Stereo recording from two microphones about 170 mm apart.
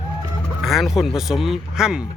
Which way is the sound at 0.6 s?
Centre (ahead or behind).